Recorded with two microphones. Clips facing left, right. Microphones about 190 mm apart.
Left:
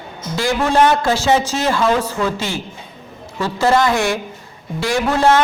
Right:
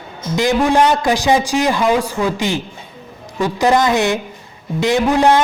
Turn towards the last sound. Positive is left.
turn(degrees=-15)  # may be behind; listen again after turning